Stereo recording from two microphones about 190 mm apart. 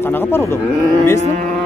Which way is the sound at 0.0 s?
10° left (ahead or behind).